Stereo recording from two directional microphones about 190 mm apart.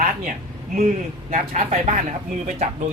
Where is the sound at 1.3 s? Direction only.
40° right (ahead or behind).